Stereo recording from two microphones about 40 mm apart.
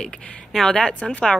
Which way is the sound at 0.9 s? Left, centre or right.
Left.